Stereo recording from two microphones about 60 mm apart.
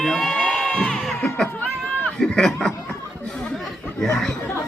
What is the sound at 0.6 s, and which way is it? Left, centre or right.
Crowd, centre.